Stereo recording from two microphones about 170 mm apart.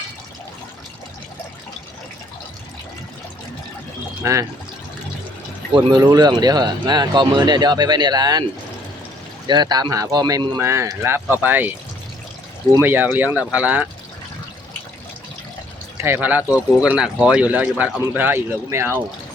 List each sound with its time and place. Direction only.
4.2 s speech: 20° right (ahead or behind)
5.7 s speech: 25° right (ahead or behind)
9.5 s speech: 25° right (ahead or behind)
12.8 s speech: 10° right (ahead or behind)
16.0 s speech: 15° right (ahead or behind)